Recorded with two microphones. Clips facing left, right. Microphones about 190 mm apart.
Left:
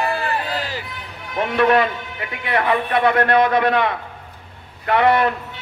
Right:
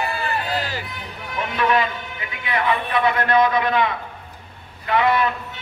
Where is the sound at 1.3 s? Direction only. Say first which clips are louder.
Left 5 dB; 60° left (ahead or behind).